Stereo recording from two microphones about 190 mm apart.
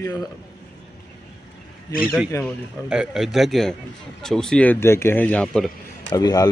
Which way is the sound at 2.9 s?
5° right (ahead or behind).